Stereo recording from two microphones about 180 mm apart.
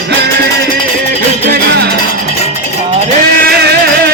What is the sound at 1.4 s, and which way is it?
Music, 60° right (ahead or behind).